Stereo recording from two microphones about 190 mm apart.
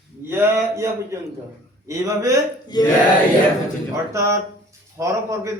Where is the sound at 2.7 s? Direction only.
20° left (ahead or behind).